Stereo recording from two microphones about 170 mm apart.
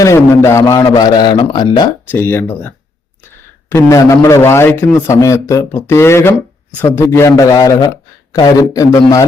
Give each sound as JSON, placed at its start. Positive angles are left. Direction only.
{"t": 0.0, "sound": "a man's voice", "side_deg": 15}
{"t": 2.0, "sound": "a man's voice", "side_deg": 15}